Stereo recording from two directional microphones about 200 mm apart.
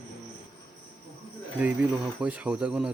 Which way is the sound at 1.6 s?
5° right (ahead or behind).